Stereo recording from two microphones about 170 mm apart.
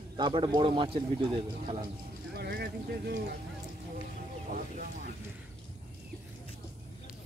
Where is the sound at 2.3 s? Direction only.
65° right (ahead or behind).